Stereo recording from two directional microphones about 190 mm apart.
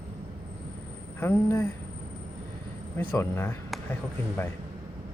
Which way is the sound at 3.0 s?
10° left (ahead or behind).